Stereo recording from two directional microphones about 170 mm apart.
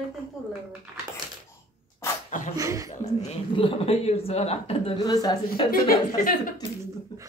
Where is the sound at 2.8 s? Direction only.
40° left (ahead or behind); by 5.6 s 25° left (ahead or behind).